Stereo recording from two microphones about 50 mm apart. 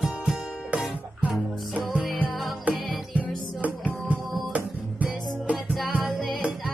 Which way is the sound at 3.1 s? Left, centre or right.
Right.